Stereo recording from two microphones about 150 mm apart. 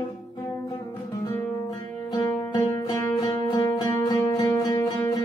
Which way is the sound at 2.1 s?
25° left (ahead or behind).